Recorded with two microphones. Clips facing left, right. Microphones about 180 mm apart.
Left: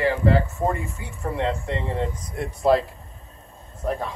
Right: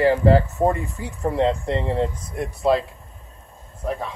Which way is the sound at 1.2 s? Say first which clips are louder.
Right 5 dB; 35° right (ahead or behind).